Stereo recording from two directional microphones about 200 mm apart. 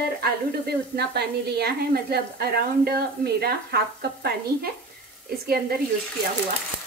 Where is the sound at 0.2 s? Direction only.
55° right (ahead or behind).